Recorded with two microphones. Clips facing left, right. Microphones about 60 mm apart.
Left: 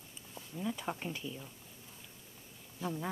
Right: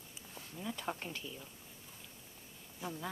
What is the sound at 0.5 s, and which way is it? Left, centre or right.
Speech, centre.